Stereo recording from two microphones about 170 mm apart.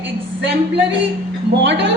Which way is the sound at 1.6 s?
90° right.